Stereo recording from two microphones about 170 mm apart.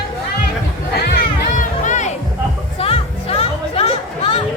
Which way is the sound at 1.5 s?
45° left (ahead or behind).